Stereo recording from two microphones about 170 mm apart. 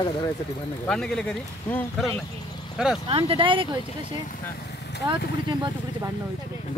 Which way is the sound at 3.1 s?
30° right (ahead or behind).